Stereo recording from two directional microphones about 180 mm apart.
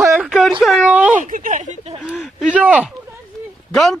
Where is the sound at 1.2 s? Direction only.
45° right (ahead or behind).